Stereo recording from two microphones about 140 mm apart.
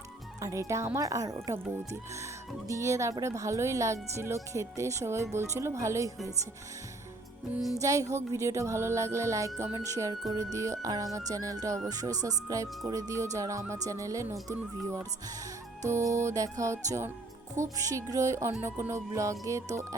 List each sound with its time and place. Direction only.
0.4 s speech: 20° right (ahead or behind)
2.6 s speech: 20° right (ahead or behind)
7.8 s speech: 25° right (ahead or behind)